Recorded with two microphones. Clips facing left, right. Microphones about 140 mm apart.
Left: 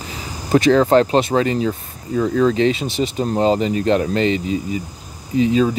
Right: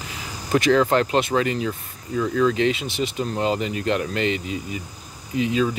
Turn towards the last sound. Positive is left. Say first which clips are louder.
# left 6 dB
turn(degrees=35)  # may be behind; listen again after turning